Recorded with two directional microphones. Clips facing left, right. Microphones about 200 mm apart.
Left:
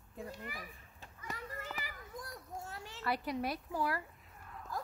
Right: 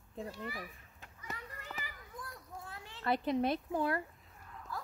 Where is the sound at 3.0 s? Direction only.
25° right (ahead or behind).